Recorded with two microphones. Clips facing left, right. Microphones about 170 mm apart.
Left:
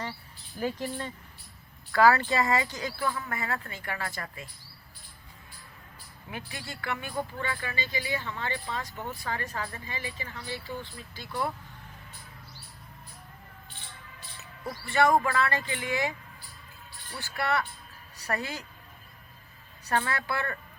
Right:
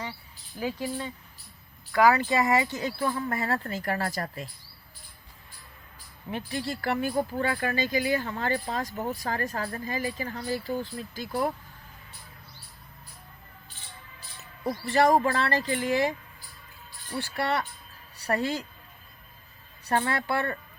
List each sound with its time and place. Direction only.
0.6 s speech: 5° right (ahead or behind)
1.9 s speech: 15° right (ahead or behind); by 4.4 s 40° right (ahead or behind)
6.3 s speech: 30° right (ahead or behind)
14.6 s speech: 30° right (ahead or behind)
19.9 s speech: 30° right (ahead or behind)